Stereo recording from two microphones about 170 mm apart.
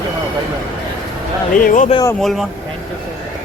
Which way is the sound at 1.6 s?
50° left (ahead or behind).